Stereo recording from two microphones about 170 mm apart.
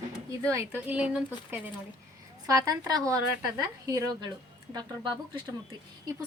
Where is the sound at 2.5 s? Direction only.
20° right (ahead or behind).